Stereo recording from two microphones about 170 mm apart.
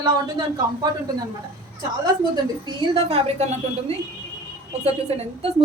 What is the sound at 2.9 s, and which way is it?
Speech, 40° right (ahead or behind).